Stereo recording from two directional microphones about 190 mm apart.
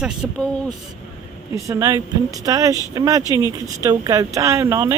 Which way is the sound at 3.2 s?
20° left (ahead or behind).